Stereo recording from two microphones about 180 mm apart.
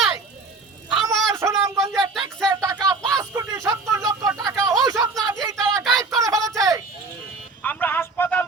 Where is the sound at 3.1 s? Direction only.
20° right (ahead or behind).